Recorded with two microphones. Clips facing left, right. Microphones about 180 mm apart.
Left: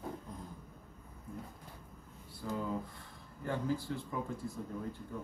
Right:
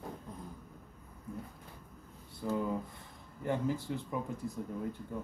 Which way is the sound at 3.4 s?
20° right (ahead or behind).